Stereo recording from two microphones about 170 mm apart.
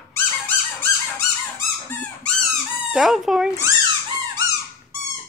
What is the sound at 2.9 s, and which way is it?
Chicken, centre (ahead or behind).